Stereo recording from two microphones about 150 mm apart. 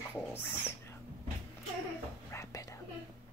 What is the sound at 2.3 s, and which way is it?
Whispering, 20° left (ahead or behind).